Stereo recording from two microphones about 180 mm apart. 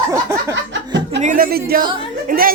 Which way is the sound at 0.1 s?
15° right (ahead or behind).